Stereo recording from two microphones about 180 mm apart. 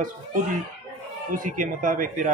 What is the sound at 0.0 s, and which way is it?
A man's voice, 45° right (ahead or behind).